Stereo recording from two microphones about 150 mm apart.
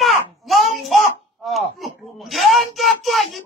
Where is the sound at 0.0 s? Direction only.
Centre (ahead or behind).